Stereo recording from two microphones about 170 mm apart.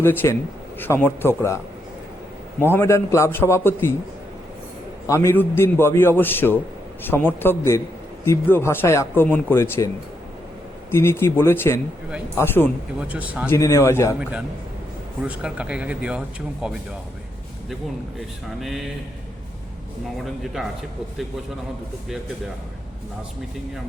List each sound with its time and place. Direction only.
0.0 s speech: 15° left (ahead or behind)
2.7 s speech: 15° left (ahead or behind)
5.0 s speech: 15° left (ahead or behind)
10.9 s speech: 15° left (ahead or behind)
13.0 s speech: 10° right (ahead or behind)
13.5 s speech: 20° left (ahead or behind)
14.2 s speech: 5° right (ahead or behind)
20.2 s speech: centre (ahead or behind)